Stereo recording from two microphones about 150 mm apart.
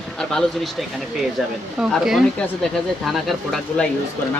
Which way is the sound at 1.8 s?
Centre (ahead or behind).